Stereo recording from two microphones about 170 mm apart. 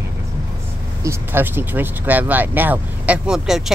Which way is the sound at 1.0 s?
15° right (ahead or behind).